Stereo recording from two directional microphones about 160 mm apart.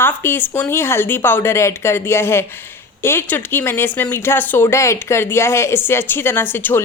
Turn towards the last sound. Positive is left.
turn(degrees=15)  # may be behind; listen again after turning